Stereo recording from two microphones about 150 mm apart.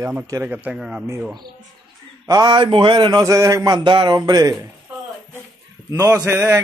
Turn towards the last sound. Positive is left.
turn(degrees=-15)  # may be behind; listen again after turning